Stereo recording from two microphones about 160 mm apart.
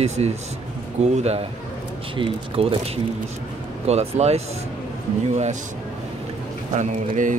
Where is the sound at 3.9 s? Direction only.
40° right (ahead or behind).